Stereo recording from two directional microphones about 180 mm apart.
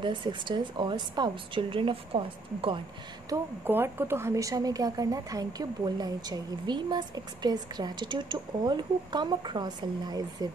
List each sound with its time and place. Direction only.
0.0 s speech: 25° right (ahead or behind)
3.3 s speech: 10° right (ahead or behind)